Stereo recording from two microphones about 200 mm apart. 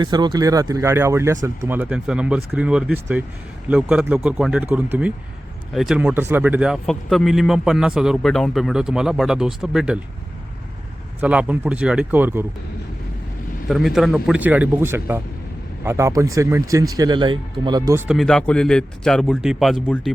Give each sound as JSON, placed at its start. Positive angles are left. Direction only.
{"t": 0.0, "sound": "speech", "side_deg": -20}
{"t": 11.2, "sound": "speech", "side_deg": -5}
{"t": 13.7, "sound": "speech", "side_deg": 0}
{"t": 18.1, "sound": "speech", "side_deg": 0}